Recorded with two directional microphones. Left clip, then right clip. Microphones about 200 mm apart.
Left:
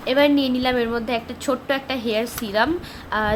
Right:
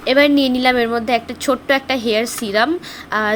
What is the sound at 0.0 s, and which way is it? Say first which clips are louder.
A woman's voice: right 5 dB; 20° right (ahead or behind).